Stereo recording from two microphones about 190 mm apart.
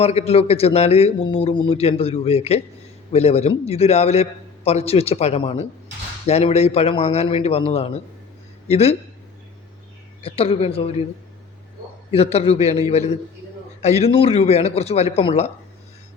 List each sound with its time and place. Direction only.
0.0 s a man's voice: 35° left (ahead or behind)
10.2 s a man's voice: 30° left (ahead or behind)
12.1 s a man's voice: 30° left (ahead or behind)
13.8 s a man's voice: 35° left (ahead or behind)